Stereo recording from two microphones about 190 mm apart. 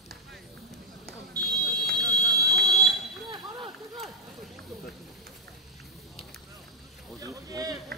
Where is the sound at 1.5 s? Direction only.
20° right (ahead or behind).